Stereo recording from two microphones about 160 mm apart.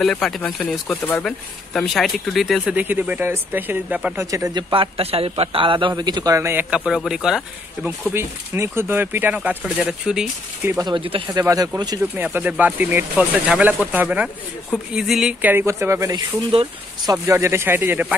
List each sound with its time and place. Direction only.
0.0 s speech: 5° left (ahead or behind)
4.3 s a man's voice: 25° right (ahead or behind); by 8.1 s centre (ahead or behind)
8.1 s speech: 15° right (ahead or behind)
10.9 s a man's voice: 35° right (ahead or behind)
11.4 s a man's voice: 20° right (ahead or behind)
12.0 s speech: 10° right (ahead or behind)